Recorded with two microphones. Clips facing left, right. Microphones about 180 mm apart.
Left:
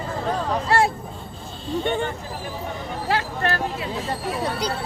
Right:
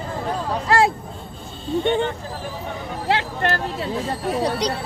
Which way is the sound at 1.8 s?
20° right (ahead or behind).